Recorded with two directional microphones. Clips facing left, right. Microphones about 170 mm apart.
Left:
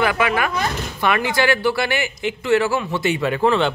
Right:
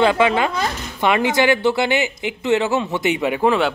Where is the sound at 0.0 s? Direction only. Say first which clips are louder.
Right 4 dB; 25° right (ahead or behind).